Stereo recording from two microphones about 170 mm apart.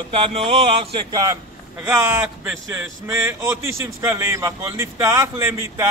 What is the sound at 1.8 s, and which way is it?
A man's voice, 15° right (ahead or behind).